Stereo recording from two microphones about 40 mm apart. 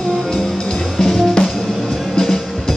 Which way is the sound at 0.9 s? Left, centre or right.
Centre.